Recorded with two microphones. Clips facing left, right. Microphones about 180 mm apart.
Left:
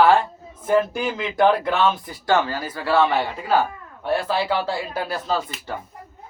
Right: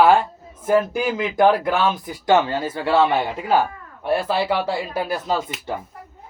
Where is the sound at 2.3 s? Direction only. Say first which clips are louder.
Right 3 dB; 20° right (ahead or behind).